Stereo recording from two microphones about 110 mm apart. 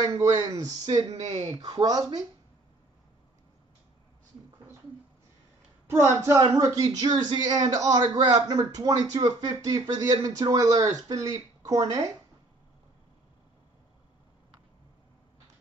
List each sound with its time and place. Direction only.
0.0 s a man's voice: 35° right (ahead or behind)
0.9 s speech: 90° right
1.5 s a man's voice: 40° right (ahead or behind)
6.4 s a man's voice: 35° right (ahead or behind)